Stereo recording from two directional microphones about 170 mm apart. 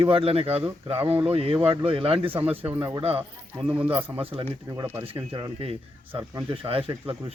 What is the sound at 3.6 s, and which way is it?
Speech, 5° right (ahead or behind).